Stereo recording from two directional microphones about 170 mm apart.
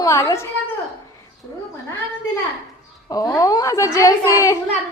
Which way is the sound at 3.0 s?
20° left (ahead or behind).